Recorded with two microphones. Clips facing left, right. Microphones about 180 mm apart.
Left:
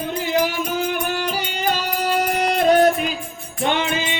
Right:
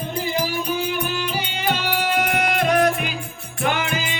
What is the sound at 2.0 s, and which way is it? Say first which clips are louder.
Music: left 1 dB; 35° left (ahead or behind).